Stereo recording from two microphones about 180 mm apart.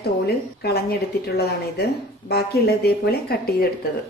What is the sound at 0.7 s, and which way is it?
A woman's voice, 60° left (ahead or behind).